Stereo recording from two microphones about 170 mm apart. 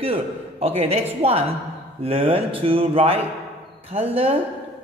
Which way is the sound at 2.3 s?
30° right (ahead or behind).